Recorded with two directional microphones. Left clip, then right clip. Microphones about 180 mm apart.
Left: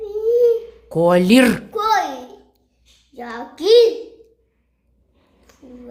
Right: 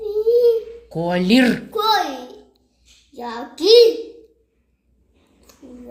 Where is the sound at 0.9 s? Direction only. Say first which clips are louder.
Left 5 dB; 35° left (ahead or behind).